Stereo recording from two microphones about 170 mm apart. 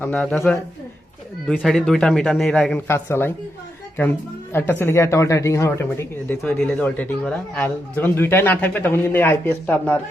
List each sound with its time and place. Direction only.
0.0 s a man's voice: 5° left (ahead or behind)
2.8 s speech: 15° left (ahead or behind)
4.5 s speech: 15° left (ahead or behind)